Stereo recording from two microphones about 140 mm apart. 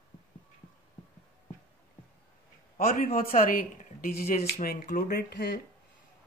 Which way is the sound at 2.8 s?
90° left.